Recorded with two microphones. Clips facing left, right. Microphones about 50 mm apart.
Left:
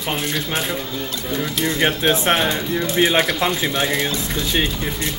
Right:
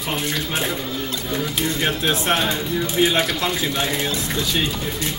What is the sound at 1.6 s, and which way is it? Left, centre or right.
Speech, left.